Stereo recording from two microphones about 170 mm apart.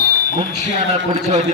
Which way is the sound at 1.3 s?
40° right (ahead or behind).